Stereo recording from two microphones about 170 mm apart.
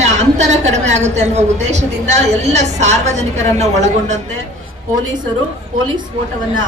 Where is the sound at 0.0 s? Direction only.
40° right (ahead or behind).